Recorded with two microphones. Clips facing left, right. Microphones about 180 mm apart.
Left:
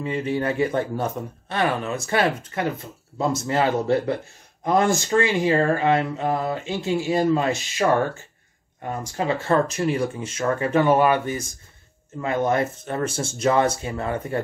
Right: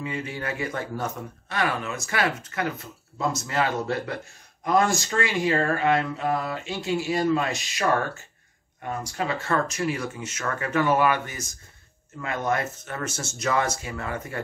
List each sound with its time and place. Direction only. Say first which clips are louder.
0.0 s speech: left 7 dB; 25° left (ahead or behind)
9.1 s speech: left 6 dB; 25° left (ahead or behind)